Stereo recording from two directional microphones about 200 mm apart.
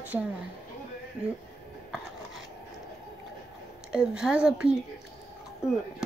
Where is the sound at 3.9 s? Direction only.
5° right (ahead or behind).